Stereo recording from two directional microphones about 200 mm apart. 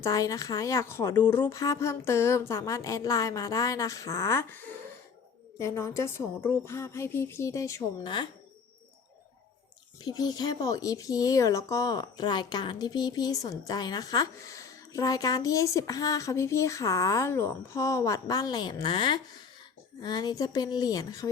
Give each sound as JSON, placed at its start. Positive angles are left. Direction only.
{"t": 0.0, "sound": "speech", "side_deg": 15}
{"t": 10.0, "sound": "speech", "side_deg": 20}